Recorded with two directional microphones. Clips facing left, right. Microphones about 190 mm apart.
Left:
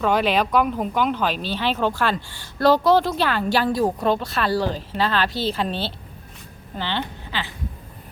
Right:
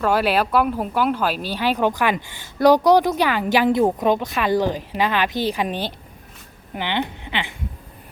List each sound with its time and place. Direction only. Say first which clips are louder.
0.0 s speech: right 1 dB; 5° right (ahead or behind)